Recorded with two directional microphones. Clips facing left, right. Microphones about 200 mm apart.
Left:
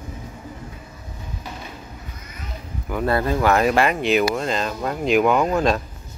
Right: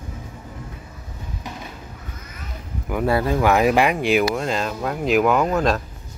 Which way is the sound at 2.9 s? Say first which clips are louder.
Right 1 dB; 10° right (ahead or behind).